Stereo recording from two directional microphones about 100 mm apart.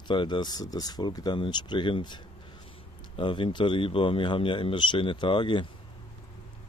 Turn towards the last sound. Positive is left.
turn(degrees=55)  # may be behind; listen again after turning